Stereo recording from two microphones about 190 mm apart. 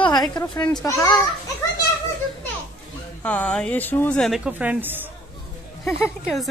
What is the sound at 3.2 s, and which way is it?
Speech, 5° left (ahead or behind).